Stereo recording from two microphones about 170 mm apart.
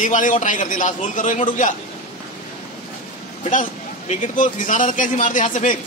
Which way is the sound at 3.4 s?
45° left (ahead or behind).